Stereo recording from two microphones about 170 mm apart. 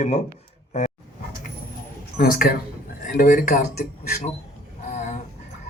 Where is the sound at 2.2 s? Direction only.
60° left (ahead or behind).